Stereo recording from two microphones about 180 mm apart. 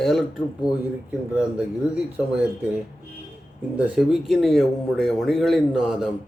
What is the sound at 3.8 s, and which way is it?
Speech, 5° right (ahead or behind).